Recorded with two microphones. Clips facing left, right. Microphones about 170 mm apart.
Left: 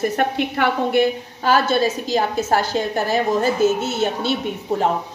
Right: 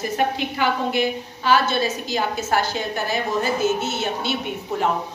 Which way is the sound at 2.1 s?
40° left (ahead or behind).